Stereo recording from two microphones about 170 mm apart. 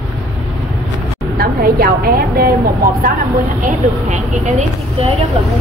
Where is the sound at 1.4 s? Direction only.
65° right (ahead or behind).